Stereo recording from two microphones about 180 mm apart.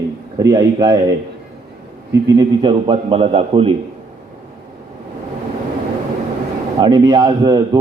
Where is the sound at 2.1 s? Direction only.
20° right (ahead or behind).